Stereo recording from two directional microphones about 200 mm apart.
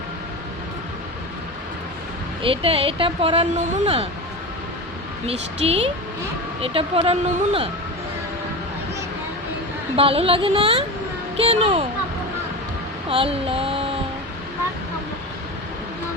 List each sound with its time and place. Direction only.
2.4 s speech: 25° right (ahead or behind)
5.2 s speech: 30° right (ahead or behind)
9.9 s speech: 30° right (ahead or behind)
13.1 s a sound: 30° right (ahead or behind)